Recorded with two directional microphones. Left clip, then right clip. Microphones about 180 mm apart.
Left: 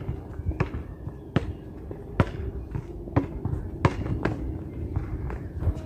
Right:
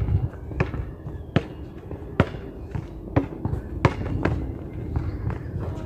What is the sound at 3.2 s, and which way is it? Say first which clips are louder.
Fireworks: right 3 dB; 25° right (ahead or behind).